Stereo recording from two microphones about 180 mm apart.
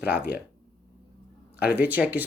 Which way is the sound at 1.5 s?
10° right (ahead or behind).